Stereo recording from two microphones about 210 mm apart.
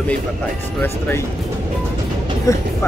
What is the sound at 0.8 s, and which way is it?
Speech, 10° left (ahead or behind).